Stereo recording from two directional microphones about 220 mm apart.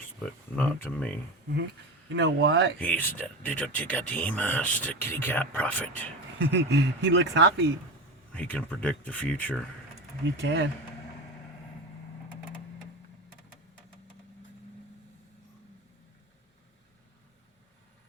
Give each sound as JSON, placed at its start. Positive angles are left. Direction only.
{"t": 0.2, "sound": "speech", "side_deg": 5}
{"t": 2.1, "sound": "speech", "side_deg": -50}
{"t": 2.7, "sound": "speech", "side_deg": 5}
{"t": 6.4, "sound": "speech", "side_deg": -55}
{"t": 8.3, "sound": "speech", "side_deg": 5}
{"t": 10.4, "sound": "speech", "side_deg": -55}